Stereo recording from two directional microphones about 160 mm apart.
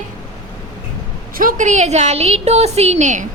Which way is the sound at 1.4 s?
55° right (ahead or behind).